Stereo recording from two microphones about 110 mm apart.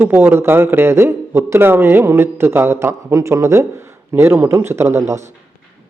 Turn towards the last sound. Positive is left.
turn(degrees=-30)  # may be behind; listen again after turning